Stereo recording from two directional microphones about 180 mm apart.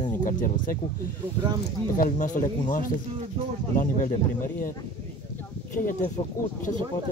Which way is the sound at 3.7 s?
50° left (ahead or behind).